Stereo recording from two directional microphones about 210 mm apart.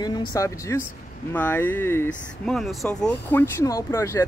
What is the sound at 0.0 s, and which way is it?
Speech, 15° left (ahead or behind).